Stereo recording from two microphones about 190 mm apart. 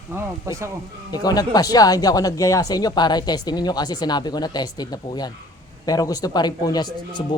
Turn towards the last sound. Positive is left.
turn(degrees=20)  # may be behind; listen again after turning